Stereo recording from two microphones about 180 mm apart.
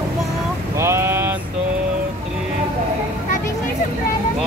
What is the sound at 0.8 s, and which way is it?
Speech, 15° right (ahead or behind).